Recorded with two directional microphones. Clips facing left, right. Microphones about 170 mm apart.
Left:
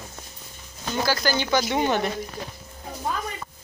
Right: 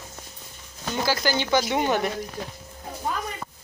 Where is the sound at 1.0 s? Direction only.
20° right (ahead or behind).